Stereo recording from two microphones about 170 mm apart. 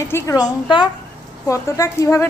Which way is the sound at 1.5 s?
15° left (ahead or behind).